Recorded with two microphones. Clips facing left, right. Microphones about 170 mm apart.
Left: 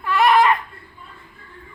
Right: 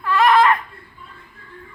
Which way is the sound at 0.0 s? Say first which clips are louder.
Right 1 dB; 15° left (ahead or behind).